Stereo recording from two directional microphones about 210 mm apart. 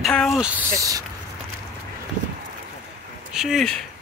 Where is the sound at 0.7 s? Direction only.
15° right (ahead or behind).